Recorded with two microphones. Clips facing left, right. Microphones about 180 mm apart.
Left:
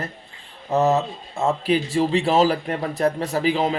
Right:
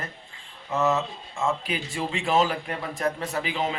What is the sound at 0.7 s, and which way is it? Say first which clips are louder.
Speech: left 5 dB; 40° left (ahead or behind).